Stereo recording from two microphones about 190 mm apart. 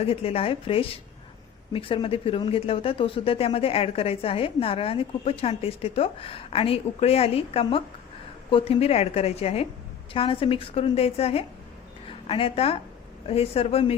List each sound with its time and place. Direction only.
0.0 s a woman's voice: 30° left (ahead or behind)